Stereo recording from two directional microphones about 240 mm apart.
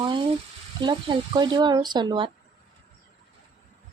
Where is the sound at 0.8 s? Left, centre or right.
Centre.